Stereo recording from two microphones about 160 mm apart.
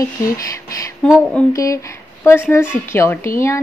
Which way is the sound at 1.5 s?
20° left (ahead or behind).